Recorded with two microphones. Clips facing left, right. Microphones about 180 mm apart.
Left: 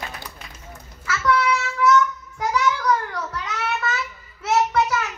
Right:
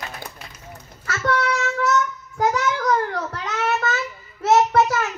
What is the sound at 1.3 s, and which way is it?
Child singing, 45° right (ahead or behind).